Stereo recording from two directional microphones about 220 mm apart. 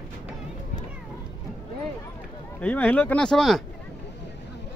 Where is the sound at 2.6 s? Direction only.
5° left (ahead or behind).